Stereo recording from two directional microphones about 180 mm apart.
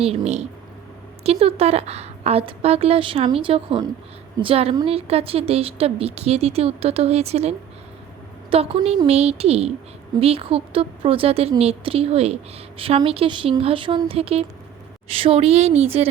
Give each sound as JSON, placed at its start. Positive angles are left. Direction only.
{"t": 0.0, "sound": "a woman's voice", "side_deg": -35}